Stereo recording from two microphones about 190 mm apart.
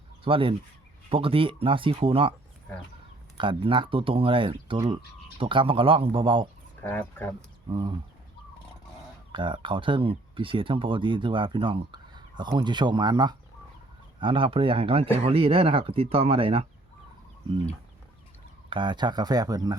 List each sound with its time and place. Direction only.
0.3 s speech: 30° right (ahead or behind)
3.3 s speech: 25° right (ahead or behind)
6.8 s speech: 10° left (ahead or behind)
7.7 s speech: 25° right (ahead or behind)
9.3 s speech: 25° right (ahead or behind)
18.7 s speech: 25° right (ahead or behind)